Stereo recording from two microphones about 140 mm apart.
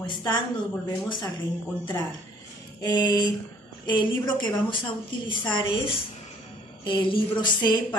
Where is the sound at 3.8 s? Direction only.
35° left (ahead or behind).